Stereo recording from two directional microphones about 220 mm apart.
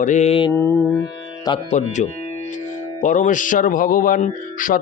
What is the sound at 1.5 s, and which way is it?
Speech, 30° left (ahead or behind).